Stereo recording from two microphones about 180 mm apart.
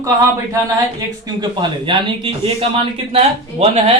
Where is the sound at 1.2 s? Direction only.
25° right (ahead or behind).